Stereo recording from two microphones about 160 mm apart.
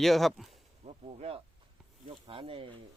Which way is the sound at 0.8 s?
40° right (ahead or behind).